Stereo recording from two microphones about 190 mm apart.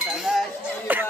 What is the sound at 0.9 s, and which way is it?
Music, 10° right (ahead or behind).